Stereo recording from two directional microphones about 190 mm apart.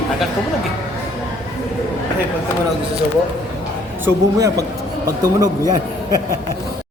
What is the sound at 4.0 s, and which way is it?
A man's voice, 15° right (ahead or behind).